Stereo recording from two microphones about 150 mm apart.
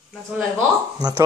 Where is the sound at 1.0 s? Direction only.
25° right (ahead or behind).